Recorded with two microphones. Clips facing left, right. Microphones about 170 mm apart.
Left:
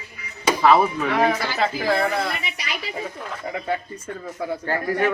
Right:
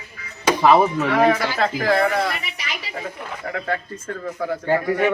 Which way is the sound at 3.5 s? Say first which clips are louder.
Right 1 dB; 15° left (ahead or behind).